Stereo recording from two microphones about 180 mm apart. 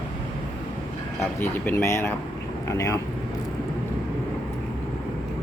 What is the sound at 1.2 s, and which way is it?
Speech, 10° left (ahead or behind).